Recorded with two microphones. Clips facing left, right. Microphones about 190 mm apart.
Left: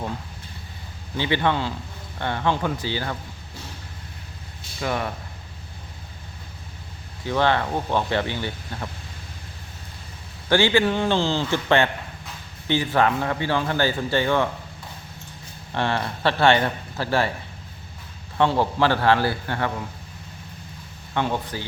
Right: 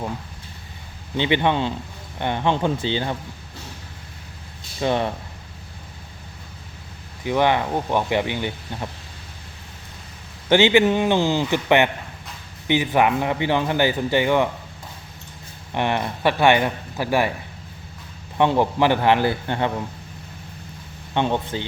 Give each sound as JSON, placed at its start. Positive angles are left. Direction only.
{"t": 1.1, "sound": "speech", "side_deg": -20}
{"t": 4.8, "sound": "speech", "side_deg": -25}
{"t": 7.3, "sound": "a man's voice", "side_deg": -15}
{"t": 10.5, "sound": "a man's voice", "side_deg": -20}
{"t": 15.7, "sound": "a man's voice", "side_deg": -15}
{"t": 18.3, "sound": "a man's voice", "side_deg": -15}
{"t": 21.1, "sound": "speech", "side_deg": -20}